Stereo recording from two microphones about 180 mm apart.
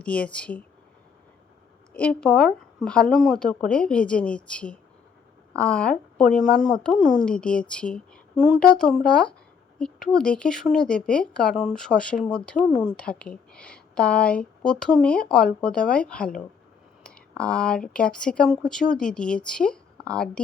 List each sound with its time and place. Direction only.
0.0 s speech: 5° left (ahead or behind)
1.9 s a woman's voice: 10° left (ahead or behind)